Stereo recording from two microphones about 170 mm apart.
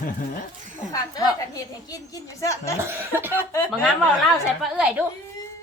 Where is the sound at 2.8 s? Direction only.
15° right (ahead or behind).